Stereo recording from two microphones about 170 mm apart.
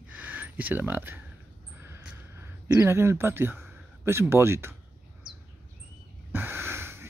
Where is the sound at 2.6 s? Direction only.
15° right (ahead or behind).